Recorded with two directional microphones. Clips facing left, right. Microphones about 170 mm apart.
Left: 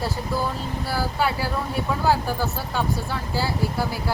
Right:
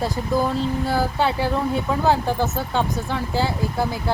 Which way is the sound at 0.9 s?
20° right (ahead or behind).